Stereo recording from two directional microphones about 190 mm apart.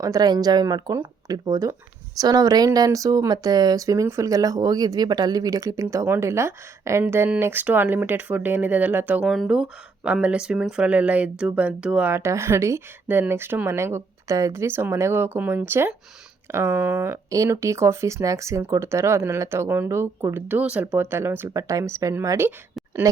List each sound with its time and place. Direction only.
0.0 s speech: 20° right (ahead or behind)